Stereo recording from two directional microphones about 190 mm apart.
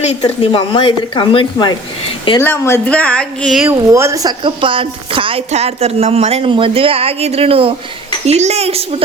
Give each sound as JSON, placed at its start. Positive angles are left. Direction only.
{"t": 0.0, "sound": "speech", "side_deg": 35}
{"t": 2.4, "sound": "speech", "side_deg": 10}
{"t": 3.7, "sound": "speech", "side_deg": -15}